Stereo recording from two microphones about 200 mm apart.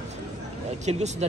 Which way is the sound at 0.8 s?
35° right (ahead or behind).